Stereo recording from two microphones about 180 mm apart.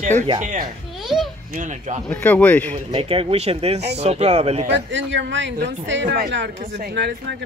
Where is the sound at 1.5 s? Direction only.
45° right (ahead or behind).